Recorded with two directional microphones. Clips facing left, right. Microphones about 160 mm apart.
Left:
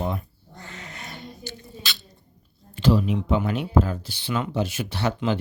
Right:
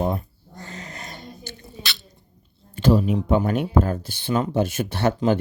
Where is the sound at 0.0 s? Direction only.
40° right (ahead or behind).